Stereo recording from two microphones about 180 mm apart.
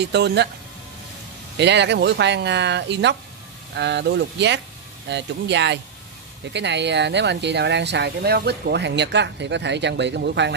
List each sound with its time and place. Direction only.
0.0 s speech: 70° right (ahead or behind)
1.6 s speech: 75° right (ahead or behind)